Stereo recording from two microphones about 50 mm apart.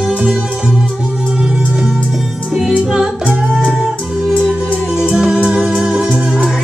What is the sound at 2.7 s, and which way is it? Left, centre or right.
Music, centre.